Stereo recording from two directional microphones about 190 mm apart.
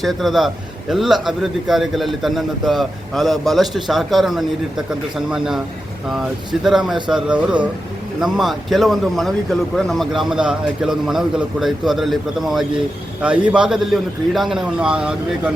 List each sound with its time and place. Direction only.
0.0 s speech: centre (ahead or behind)